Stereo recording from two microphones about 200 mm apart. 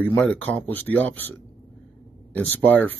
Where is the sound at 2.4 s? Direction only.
10° left (ahead or behind).